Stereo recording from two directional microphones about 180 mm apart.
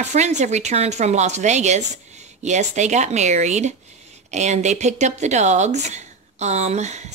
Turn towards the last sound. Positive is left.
turn(degrees=-40)  # may be behind; listen again after turning